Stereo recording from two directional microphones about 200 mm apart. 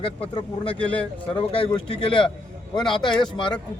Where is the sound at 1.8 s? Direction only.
25° left (ahead or behind).